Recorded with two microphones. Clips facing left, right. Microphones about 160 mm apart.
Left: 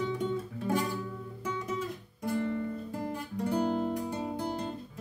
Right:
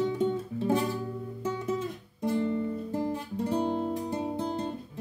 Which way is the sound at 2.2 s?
25° right (ahead or behind).